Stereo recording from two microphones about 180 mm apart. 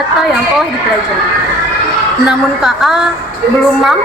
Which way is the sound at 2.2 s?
Centre (ahead or behind).